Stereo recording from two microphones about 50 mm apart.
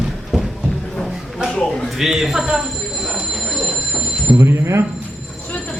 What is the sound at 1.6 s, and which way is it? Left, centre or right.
Speech, centre.